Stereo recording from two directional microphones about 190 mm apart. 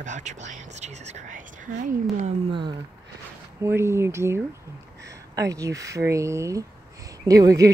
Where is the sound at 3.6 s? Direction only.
15° right (ahead or behind).